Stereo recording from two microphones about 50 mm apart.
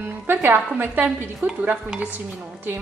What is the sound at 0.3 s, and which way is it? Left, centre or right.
Speech, right.